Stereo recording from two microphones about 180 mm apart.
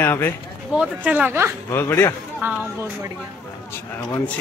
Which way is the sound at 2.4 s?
10° right (ahead or behind).